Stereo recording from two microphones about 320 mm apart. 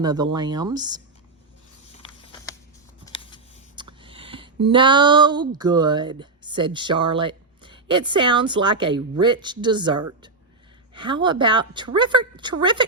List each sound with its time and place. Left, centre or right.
0.0 s a woman's voice: centre
3.1 s a sound: centre
3.8 s a woman's voice: centre